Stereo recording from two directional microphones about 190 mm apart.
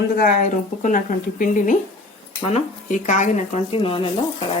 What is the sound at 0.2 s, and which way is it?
A woman's voice, 40° left (ahead or behind).